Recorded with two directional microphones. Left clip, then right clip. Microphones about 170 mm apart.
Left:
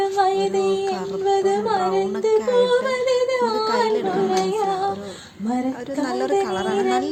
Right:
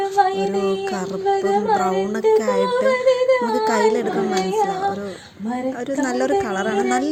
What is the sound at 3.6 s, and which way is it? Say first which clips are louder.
Speech: right 2 dB; 20° right (ahead or behind).